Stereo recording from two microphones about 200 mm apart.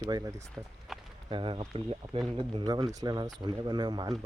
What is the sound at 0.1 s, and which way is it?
Speech, 15° right (ahead or behind).